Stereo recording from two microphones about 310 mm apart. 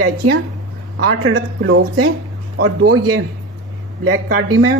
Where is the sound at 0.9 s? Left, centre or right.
Right.